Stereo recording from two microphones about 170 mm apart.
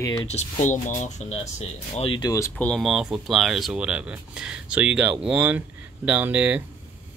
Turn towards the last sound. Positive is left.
turn(degrees=-10)  # may be behind; listen again after turning